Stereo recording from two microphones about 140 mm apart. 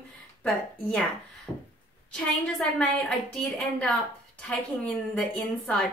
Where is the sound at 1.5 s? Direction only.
5° left (ahead or behind).